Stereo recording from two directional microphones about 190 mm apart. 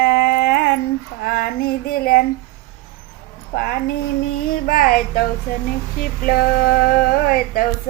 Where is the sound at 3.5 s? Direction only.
55° left (ahead or behind).